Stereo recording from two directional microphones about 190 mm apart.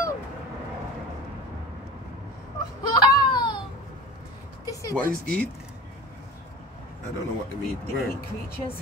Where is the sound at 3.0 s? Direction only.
20° left (ahead or behind).